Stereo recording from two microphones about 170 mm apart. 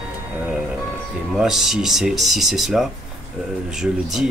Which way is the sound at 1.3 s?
Centre (ahead or behind).